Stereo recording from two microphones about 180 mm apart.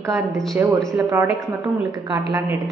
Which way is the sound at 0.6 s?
10° right (ahead or behind).